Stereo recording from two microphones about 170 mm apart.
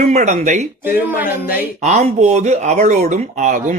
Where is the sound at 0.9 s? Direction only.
60° left (ahead or behind).